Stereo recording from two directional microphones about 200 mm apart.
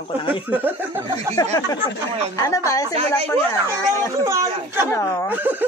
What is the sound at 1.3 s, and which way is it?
A woman's voice, 15° left (ahead or behind).